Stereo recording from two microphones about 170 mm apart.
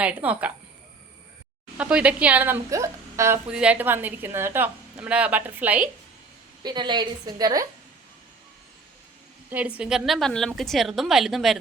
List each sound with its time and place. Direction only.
0.0 s a woman's voice: 10° right (ahead or behind)
1.8 s a woman's voice: 5° right (ahead or behind)
6.6 s a woman's voice: 25° right (ahead or behind)
9.5 s a woman's voice: 10° right (ahead or behind)